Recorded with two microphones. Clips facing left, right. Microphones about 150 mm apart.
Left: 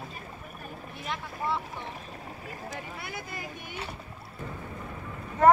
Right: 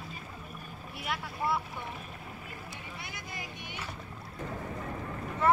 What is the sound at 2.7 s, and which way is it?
Vehicle, 55° left (ahead or behind).